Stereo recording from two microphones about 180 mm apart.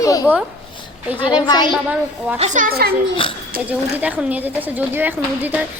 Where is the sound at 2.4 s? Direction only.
45° right (ahead or behind).